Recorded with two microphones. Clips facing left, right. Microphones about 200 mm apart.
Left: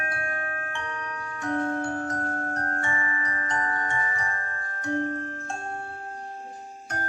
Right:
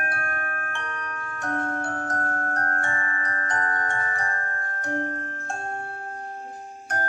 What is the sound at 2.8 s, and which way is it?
Glockenspiel, 50° right (ahead or behind).